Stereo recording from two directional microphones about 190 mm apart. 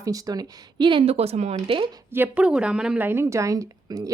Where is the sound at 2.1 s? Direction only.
10° right (ahead or behind).